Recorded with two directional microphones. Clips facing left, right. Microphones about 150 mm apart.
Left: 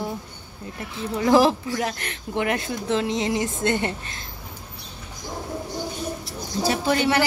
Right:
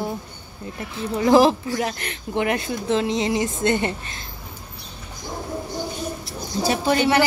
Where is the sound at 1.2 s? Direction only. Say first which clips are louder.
Right 2 dB; 20° right (ahead or behind).